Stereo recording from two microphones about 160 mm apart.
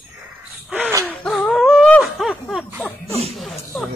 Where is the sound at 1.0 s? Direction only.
5° left (ahead or behind).